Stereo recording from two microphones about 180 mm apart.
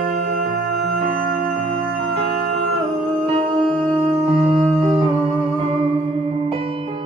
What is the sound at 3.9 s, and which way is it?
Music, 35° right (ahead or behind).